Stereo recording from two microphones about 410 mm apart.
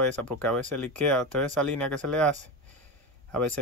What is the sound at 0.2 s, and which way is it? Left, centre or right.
Speech, centre.